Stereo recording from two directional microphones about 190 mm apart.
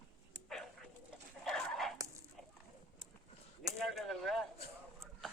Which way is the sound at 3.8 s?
Centre (ahead or behind).